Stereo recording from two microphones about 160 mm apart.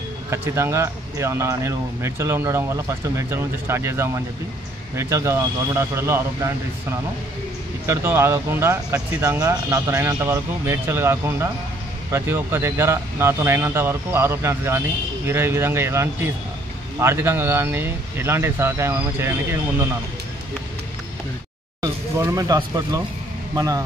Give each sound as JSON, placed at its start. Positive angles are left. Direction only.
{"t": 0.3, "sound": "speech", "side_deg": -15}
{"t": 7.8, "sound": "speech", "side_deg": -15}
{"t": 21.8, "sound": "speech", "side_deg": -20}